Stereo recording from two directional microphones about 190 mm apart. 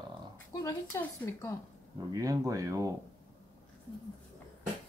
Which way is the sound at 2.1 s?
20° right (ahead or behind).